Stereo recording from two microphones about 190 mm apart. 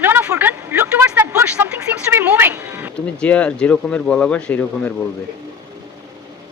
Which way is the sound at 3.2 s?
5° left (ahead or behind).